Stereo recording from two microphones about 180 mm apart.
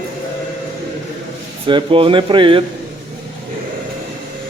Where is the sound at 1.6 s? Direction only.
30° right (ahead or behind).